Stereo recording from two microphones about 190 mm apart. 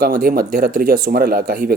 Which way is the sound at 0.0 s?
50° right (ahead or behind).